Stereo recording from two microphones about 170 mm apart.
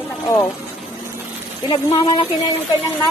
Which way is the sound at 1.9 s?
25° left (ahead or behind).